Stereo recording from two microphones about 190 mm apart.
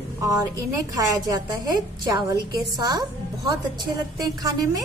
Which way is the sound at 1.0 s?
20° right (ahead or behind).